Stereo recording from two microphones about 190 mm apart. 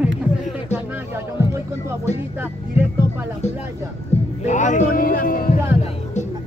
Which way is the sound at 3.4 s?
35° left (ahead or behind).